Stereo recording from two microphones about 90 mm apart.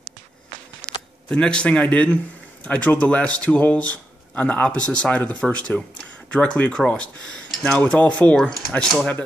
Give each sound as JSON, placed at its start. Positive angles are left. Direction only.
{"t": 1.3, "sound": "speech", "side_deg": 10}